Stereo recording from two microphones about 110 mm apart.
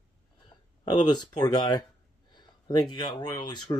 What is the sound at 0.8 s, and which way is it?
Speech, 40° left (ahead or behind).